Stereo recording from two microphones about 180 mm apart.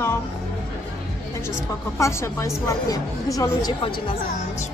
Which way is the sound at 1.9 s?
15° left (ahead or behind).